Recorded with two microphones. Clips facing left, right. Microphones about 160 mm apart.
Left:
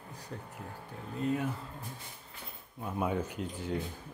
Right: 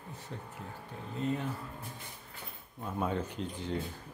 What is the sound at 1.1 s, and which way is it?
Speech, centre (ahead or behind).